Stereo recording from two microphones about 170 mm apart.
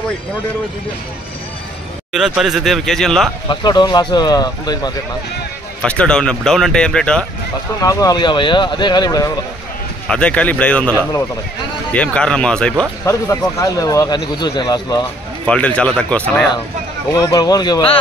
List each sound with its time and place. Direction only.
2.1 s speech: 5° right (ahead or behind)
3.4 s speech: 25° left (ahead or behind)
5.8 s speech: 5° left (ahead or behind)
7.8 s speech: 20° left (ahead or behind)
10.0 s speech: 5° left (ahead or behind)
13.0 s speech: 15° left (ahead or behind)
15.4 s speech: 5° left (ahead or behind)
17.1 s speech: 25° left (ahead or behind)